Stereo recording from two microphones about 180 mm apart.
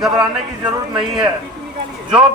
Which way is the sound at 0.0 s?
5° right (ahead or behind).